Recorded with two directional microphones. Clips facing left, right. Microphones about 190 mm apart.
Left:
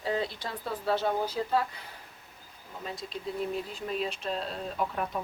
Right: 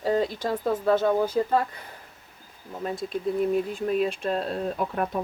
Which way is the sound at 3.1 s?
50° right (ahead or behind).